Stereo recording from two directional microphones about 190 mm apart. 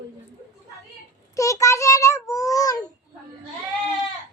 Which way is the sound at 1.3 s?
15° left (ahead or behind).